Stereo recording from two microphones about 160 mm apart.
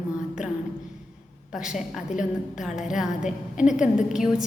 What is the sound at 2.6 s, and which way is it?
A woman's voice, 5° right (ahead or behind).